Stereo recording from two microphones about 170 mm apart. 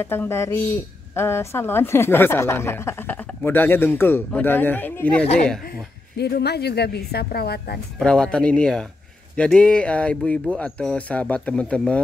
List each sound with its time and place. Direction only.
0.0 s a woman's voice: 15° left (ahead or behind)
6.1 s a woman's voice: 70° left (ahead or behind)
8.0 s a woman's voice: 5° left (ahead or behind)